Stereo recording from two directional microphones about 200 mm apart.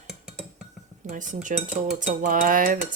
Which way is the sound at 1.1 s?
40° right (ahead or behind).